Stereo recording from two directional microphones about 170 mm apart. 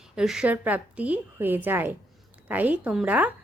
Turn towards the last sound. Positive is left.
turn(degrees=-10)  # may be behind; listen again after turning